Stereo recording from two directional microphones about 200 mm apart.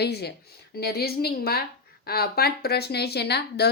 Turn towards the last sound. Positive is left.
turn(degrees=55)  # may be behind; listen again after turning